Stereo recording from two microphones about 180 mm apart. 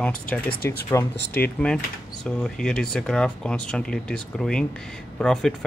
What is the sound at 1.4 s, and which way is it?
Speech, 5° left (ahead or behind).